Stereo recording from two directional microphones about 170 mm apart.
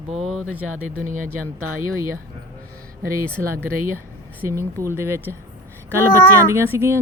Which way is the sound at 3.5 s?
55° right (ahead or behind).